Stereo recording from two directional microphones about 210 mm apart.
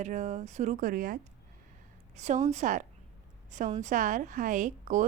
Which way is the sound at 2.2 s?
35° right (ahead or behind).